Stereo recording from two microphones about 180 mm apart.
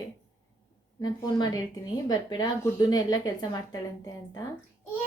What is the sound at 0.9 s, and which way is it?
A woman's voice, 25° left (ahead or behind).